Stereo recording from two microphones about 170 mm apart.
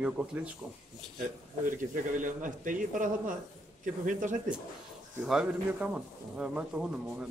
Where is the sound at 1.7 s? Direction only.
50° right (ahead or behind).